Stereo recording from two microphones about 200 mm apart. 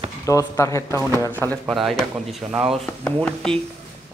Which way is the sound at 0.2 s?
15° left (ahead or behind).